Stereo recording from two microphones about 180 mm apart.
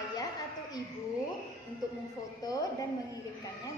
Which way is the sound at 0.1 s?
20° left (ahead or behind).